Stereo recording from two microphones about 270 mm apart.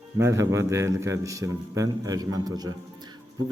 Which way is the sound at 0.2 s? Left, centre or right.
Centre.